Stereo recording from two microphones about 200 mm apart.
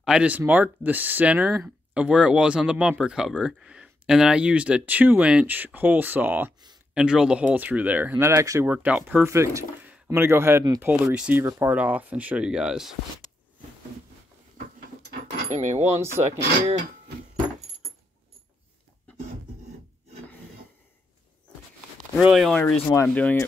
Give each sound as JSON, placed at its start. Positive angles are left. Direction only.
{"t": 0.0, "sound": "speech", "side_deg": -5}
{"t": 15.5, "sound": "speech", "side_deg": -35}
{"t": 22.1, "sound": "speech", "side_deg": 0}
{"t": 22.6, "sound": "speech", "side_deg": 10}